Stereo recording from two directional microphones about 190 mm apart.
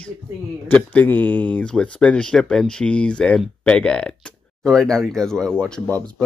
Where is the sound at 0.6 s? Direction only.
10° left (ahead or behind).